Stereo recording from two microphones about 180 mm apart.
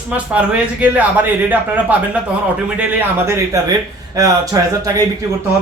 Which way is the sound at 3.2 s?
15° right (ahead or behind).